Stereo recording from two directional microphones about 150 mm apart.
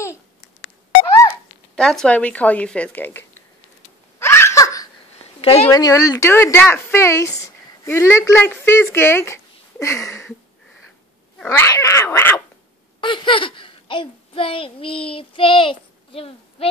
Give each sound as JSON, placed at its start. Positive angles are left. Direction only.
{"t": 1.8, "sound": "a woman's voice", "side_deg": 5}
{"t": 4.2, "sound": "laughter", "side_deg": 15}
{"t": 5.4, "sound": "a woman's voice", "side_deg": 40}
{"t": 5.7, "sound": "a woman's voice", "side_deg": 25}
{"t": 11.4, "sound": "a woman's voice", "side_deg": 20}
{"t": 13.0, "sound": "a child's voice", "side_deg": 35}